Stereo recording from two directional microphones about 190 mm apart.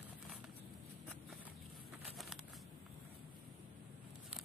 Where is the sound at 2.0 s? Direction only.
Centre (ahead or behind).